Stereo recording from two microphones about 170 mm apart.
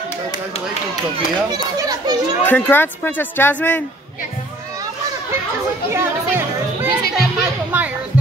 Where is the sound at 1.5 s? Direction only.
25° right (ahead or behind).